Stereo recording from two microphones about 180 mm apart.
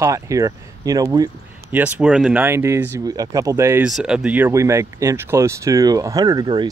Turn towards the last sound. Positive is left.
turn(degrees=-25)  # may be behind; listen again after turning